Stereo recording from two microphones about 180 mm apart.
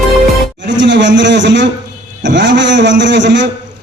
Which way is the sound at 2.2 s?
75° right (ahead or behind).